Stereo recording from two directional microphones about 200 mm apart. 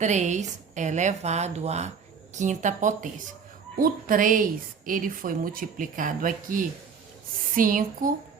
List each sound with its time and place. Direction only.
0.0 s speech: 35° right (ahead or behind)